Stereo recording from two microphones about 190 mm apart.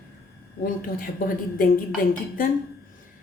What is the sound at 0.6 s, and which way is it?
Speech, 45° left (ahead or behind).